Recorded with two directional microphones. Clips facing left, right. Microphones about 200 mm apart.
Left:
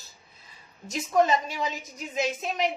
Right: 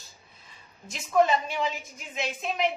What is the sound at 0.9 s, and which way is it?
Speech, 40° left (ahead or behind).